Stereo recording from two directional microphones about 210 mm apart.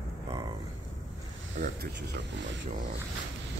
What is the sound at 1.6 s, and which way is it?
Speech, 50° right (ahead or behind).